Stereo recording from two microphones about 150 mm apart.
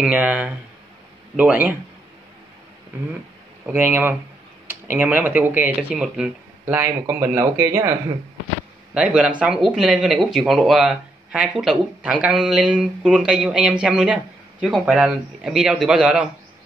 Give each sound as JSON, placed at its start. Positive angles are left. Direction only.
{"t": 0.0, "sound": "speech", "side_deg": -10}
{"t": 3.6, "sound": "speech", "side_deg": -15}
{"t": 6.6, "sound": "speech", "side_deg": -15}
{"t": 8.9, "sound": "a man's voice", "side_deg": -10}